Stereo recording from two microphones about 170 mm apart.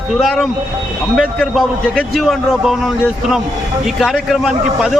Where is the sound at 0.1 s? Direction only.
Centre (ahead or behind).